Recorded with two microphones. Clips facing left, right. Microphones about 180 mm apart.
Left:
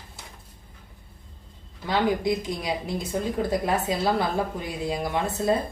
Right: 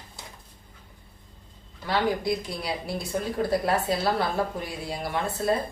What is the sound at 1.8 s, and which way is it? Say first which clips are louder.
A woman's voice: left 2 dB; 20° left (ahead or behind).